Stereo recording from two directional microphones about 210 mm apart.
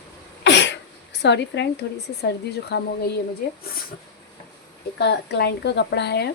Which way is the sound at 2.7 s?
55° left (ahead or behind).